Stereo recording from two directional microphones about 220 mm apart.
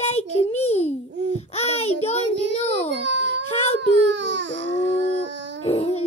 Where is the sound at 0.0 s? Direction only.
30° left (ahead or behind).